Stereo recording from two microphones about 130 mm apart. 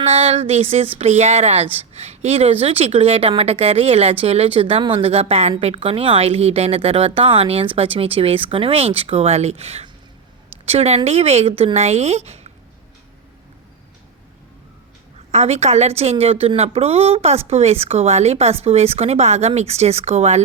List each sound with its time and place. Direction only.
0.0 s speech: 50° right (ahead or behind)
15.3 s speech: 55° right (ahead or behind)